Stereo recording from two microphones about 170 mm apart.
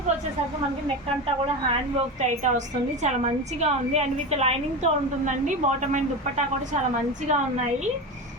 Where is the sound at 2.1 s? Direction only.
45° right (ahead or behind).